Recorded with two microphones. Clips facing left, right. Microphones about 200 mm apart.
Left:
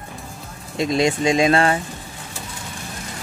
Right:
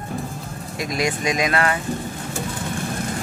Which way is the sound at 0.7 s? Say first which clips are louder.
Left 5 dB; 25° left (ahead or behind).